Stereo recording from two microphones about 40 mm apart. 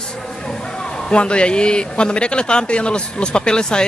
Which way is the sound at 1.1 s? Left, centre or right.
Left.